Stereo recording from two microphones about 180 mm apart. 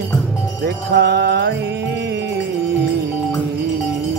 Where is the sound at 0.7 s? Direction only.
65° right (ahead or behind).